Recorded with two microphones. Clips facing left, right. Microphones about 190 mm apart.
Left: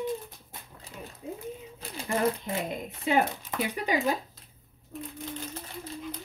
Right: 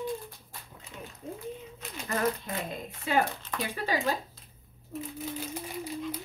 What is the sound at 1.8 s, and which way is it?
Speech, 30° left (ahead or behind).